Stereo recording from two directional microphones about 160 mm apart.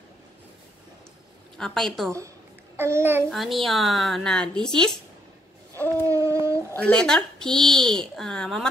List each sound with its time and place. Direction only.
1.6 s a child's voice: 5° left (ahead or behind)
2.8 s a child's voice: 15° right (ahead or behind)
3.3 s a child's voice: centre (ahead or behind)
6.0 s a sound: 20° right (ahead or behind)
6.8 s a child's voice: 5° left (ahead or behind)